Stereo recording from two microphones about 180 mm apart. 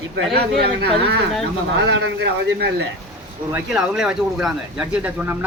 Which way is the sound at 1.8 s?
80° right.